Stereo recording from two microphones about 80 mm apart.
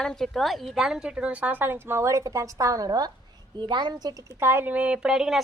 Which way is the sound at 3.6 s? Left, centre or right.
Right.